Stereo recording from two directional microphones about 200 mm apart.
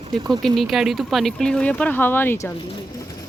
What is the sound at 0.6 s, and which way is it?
Speech, centre (ahead or behind).